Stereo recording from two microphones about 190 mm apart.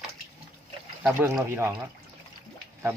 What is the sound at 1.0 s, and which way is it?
Speech, 10° right (ahead or behind).